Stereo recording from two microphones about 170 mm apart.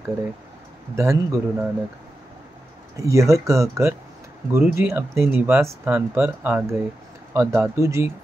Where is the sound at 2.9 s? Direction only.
20° right (ahead or behind).